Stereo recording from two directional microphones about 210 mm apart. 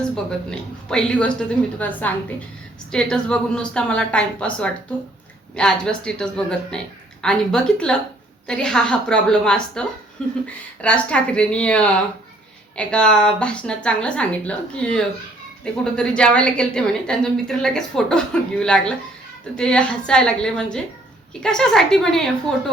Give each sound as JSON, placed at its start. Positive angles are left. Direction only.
{"t": 0.3, "sound": "a woman's voice", "side_deg": 5}
{"t": 2.9, "sound": "a woman's voice", "side_deg": 5}